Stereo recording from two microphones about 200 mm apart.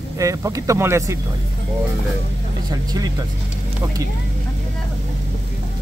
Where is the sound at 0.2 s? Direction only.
15° right (ahead or behind).